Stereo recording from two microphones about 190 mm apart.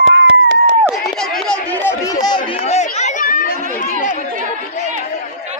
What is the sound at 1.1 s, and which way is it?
Chatter, centre (ahead or behind).